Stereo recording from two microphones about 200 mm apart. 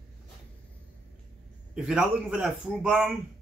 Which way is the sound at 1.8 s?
5° right (ahead or behind).